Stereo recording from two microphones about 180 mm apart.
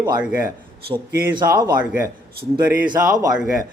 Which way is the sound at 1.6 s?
20° right (ahead or behind).